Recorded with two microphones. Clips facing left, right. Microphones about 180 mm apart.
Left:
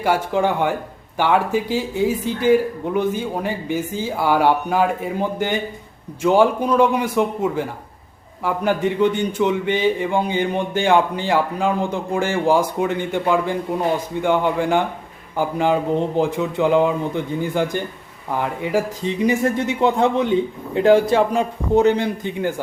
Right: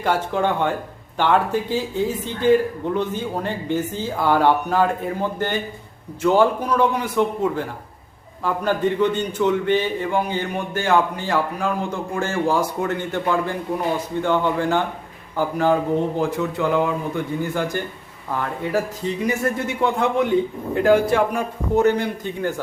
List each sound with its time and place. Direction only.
0.0 s a man's voice: 10° left (ahead or behind)